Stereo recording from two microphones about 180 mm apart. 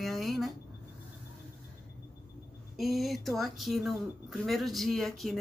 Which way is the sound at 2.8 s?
Centre (ahead or behind).